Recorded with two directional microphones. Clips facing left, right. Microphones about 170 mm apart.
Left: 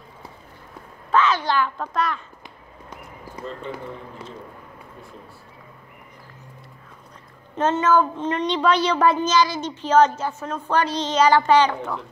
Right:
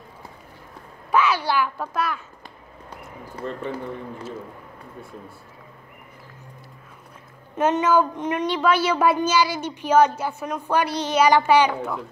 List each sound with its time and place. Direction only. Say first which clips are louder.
1.1 s a child's voice: left 1 dB; 10° right (ahead or behind)
3.4 s speech: right 3 dB; 60° right (ahead or behind)
7.5 s speech: even; 10° right (ahead or behind)